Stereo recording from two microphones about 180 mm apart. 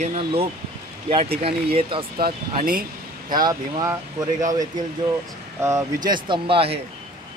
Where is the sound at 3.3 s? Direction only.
20° right (ahead or behind).